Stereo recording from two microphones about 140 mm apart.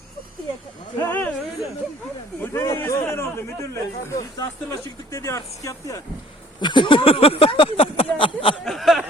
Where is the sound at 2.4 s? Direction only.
20° left (ahead or behind).